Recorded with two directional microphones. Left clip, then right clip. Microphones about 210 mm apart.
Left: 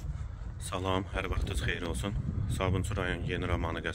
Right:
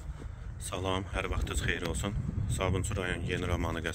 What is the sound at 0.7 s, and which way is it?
Speech, 5° right (ahead or behind).